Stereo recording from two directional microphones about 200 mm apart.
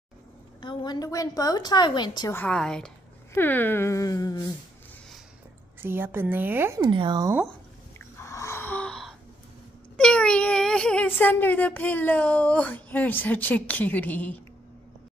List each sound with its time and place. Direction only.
0.6 s a woman's voice: 20° left (ahead or behind)
2.3 s a woman's voice: 5° left (ahead or behind)
5.8 s a woman's voice: 10° right (ahead or behind)
6.8 s speech: 25° right (ahead or behind)
8.0 s wheeze: 15° left (ahead or behind)
9.9 s speech: 5° left (ahead or behind)